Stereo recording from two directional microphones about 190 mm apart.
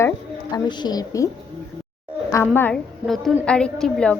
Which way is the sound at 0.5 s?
25° left (ahead or behind).